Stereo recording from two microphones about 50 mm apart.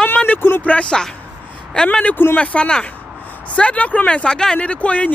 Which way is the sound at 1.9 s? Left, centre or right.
Left.